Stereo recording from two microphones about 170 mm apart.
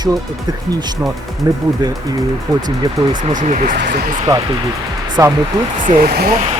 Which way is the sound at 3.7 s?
70° right (ahead or behind).